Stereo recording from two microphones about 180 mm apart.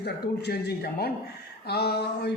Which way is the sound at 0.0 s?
65° left (ahead or behind).